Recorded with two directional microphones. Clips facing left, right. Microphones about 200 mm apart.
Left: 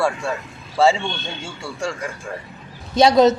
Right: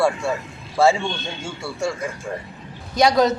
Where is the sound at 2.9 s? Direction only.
25° left (ahead or behind).